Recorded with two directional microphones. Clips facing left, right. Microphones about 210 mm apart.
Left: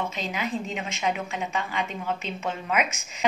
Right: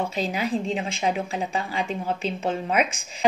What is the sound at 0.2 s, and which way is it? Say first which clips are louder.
A woman's voice: right 4 dB; 35° right (ahead or behind).